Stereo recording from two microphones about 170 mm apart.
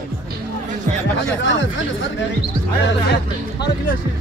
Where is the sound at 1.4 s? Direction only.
90° left.